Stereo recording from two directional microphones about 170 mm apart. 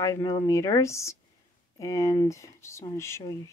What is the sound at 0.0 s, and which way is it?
Speech, 20° left (ahead or behind).